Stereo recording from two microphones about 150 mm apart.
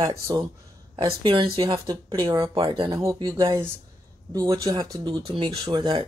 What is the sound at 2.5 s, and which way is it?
Speech, 35° right (ahead or behind).